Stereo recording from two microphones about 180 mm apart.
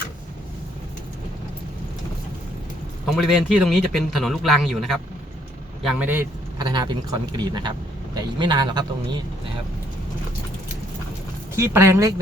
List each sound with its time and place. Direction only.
3.1 s speech: centre (ahead or behind)
6.6 s a man's voice: 25° right (ahead or behind)
11.5 s speech: 15° right (ahead or behind)